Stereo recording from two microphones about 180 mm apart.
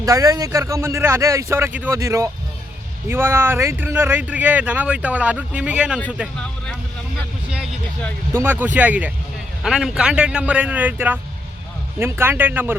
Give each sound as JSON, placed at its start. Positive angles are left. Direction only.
{"t": 0.0, "sound": "speech", "side_deg": -20}
{"t": 8.3, "sound": "speech", "side_deg": -10}